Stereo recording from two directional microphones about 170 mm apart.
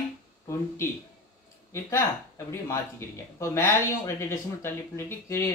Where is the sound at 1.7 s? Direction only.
15° left (ahead or behind).